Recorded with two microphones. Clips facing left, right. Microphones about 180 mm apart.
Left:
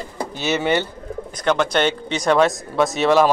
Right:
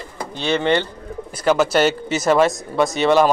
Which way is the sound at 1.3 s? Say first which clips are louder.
Right 3 dB; 5° right (ahead or behind).